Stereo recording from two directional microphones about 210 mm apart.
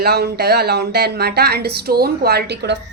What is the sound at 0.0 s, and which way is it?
A woman's voice, 50° right (ahead or behind).